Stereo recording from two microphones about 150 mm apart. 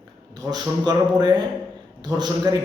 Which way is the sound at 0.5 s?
25° right (ahead or behind).